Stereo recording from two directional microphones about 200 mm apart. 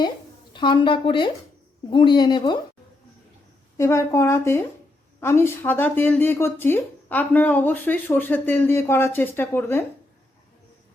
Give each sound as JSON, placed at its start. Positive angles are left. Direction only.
{"t": 0.5, "sound": "speech", "side_deg": 25}
{"t": 3.8, "sound": "speech", "side_deg": 15}